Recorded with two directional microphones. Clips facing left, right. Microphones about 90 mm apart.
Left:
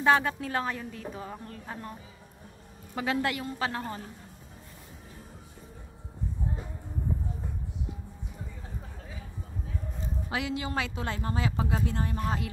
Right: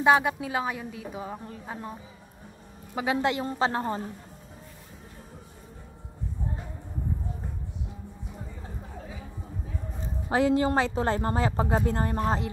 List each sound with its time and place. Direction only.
0.0 s a woman's voice: 15° right (ahead or behind); by 4.0 s 30° right (ahead or behind)
10.3 s speech: 40° right (ahead or behind)